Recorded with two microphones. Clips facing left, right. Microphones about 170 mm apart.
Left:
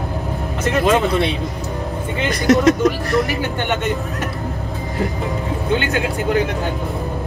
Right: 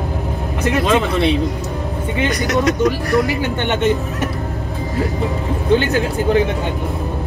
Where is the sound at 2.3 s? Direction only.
30° left (ahead or behind).